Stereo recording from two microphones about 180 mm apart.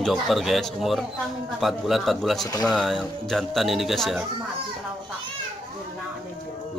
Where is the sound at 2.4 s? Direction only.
20° left (ahead or behind).